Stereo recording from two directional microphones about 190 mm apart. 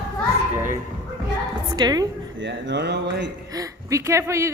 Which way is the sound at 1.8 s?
20° right (ahead or behind).